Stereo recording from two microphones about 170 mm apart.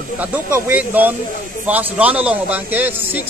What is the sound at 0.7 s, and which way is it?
A man's voice, 10° right (ahead or behind).